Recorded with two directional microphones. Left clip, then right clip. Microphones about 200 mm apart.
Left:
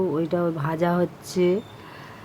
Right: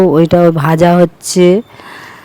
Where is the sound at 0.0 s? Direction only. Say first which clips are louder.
Right 16 dB; 50° right (ahead or behind).